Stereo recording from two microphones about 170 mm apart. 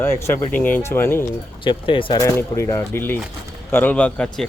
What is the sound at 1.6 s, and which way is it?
Speech, 30° left (ahead or behind).